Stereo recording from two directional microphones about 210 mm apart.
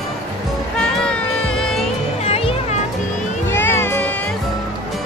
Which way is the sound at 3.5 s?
10° left (ahead or behind).